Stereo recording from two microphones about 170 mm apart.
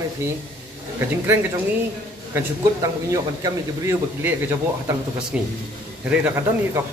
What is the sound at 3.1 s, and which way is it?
Speech, 15° right (ahead or behind).